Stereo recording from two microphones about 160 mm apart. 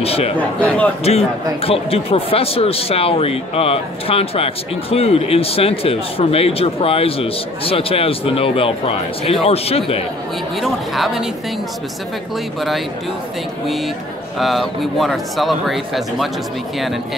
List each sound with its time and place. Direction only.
0.0 s a sound: 40° left (ahead or behind)
0.6 s a man's voice: 10° left (ahead or behind)
1.0 s speech: 40° left (ahead or behind)
10.6 s speech: centre (ahead or behind)
14.4 s speech: centre (ahead or behind)